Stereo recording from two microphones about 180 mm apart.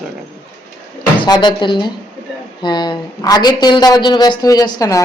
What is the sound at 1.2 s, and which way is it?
A woman's voice, 25° left (ahead or behind).